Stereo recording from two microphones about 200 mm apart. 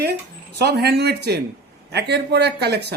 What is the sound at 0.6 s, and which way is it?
Speech, 55° right (ahead or behind).